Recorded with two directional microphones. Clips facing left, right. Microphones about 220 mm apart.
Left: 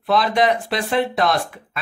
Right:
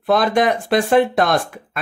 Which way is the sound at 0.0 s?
50° right (ahead or behind).